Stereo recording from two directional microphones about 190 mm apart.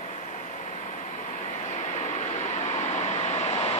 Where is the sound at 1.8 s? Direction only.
40° left (ahead or behind).